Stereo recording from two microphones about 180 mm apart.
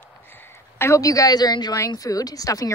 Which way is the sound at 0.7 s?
15° left (ahead or behind).